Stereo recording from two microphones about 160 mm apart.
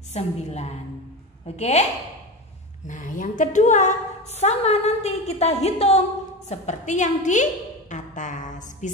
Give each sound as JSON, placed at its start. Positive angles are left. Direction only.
{"t": 0.1, "sound": "a woman's voice", "side_deg": 45}
{"t": 2.9, "sound": "a woman's voice", "side_deg": 55}